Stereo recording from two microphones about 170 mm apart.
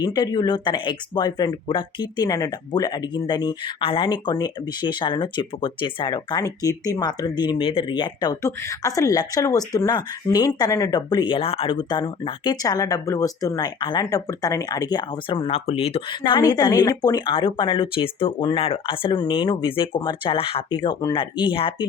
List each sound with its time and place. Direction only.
0.0 s speech: 20° left (ahead or behind)
15.4 s speech: 35° left (ahead or behind)